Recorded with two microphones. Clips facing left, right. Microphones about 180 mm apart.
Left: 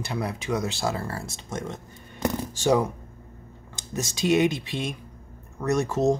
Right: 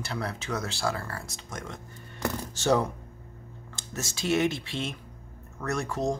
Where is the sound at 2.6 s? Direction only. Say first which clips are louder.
Left 2 dB; 10° left (ahead or behind).